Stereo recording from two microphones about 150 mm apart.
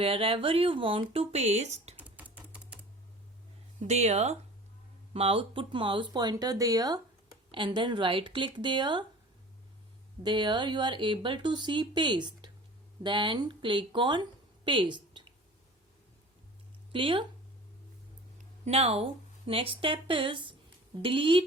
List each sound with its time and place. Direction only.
0.0 s speech: 40° right (ahead or behind)
2.0 s typewriter: 10° right (ahead or behind)
3.8 s speech: 50° right (ahead or behind); by 9.0 s 30° right (ahead or behind)
10.2 s a woman's voice: 30° right (ahead or behind)
16.9 s speech: 35° right (ahead or behind)
18.6 s speech: 45° right (ahead or behind)